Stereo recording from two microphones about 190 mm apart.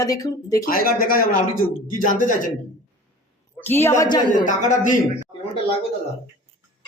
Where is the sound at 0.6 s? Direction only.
50° left (ahead or behind).